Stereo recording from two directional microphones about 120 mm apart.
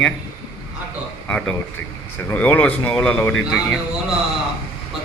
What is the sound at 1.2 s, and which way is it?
Speech, 10° left (ahead or behind).